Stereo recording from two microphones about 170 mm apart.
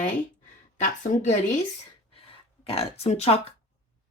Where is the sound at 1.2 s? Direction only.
45° left (ahead or behind).